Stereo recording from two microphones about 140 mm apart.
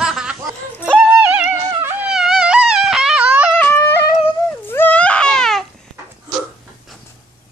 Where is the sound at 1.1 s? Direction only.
10° right (ahead or behind).